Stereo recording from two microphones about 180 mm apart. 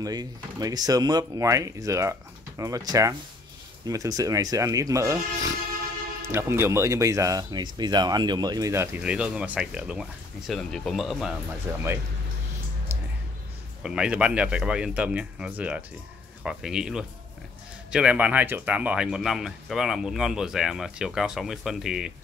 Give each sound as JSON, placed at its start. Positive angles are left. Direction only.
{"t": 0.0, "sound": "speech", "side_deg": -20}
{"t": 6.2, "sound": "speech", "side_deg": -15}
{"t": 11.7, "sound": "speech", "side_deg": -10}
{"t": 13.8, "sound": "speech", "side_deg": -5}